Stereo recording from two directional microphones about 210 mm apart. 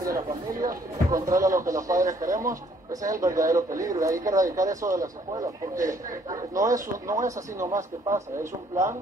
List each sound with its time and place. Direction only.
0.7 s speech: 15° right (ahead or behind)